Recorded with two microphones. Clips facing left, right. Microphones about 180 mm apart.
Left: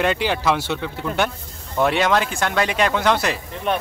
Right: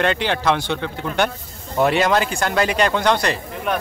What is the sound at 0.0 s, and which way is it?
Speech, 5° left (ahead or behind).